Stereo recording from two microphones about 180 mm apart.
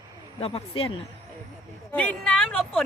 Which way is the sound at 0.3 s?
35° left (ahead or behind).